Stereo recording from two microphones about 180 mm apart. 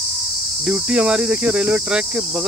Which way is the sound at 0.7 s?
5° right (ahead or behind).